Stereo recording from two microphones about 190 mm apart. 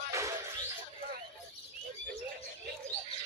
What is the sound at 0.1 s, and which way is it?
Music, 15° right (ahead or behind).